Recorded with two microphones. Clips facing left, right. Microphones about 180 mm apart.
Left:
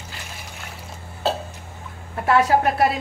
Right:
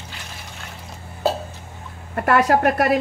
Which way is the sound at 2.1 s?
65° right (ahead or behind).